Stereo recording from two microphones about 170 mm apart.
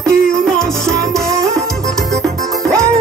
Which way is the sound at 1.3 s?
20° right (ahead or behind).